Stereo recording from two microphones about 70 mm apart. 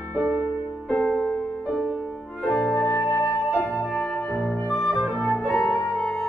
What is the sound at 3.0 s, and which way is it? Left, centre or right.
Music, left.